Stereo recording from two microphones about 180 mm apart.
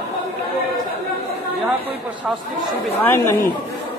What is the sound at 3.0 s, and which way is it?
Speech, 15° left (ahead or behind).